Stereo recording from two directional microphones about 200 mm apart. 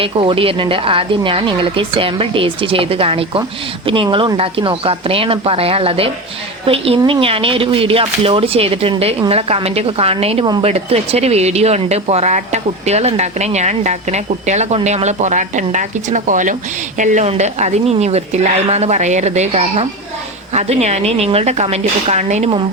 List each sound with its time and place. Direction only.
0.0 s speech: 25° right (ahead or behind)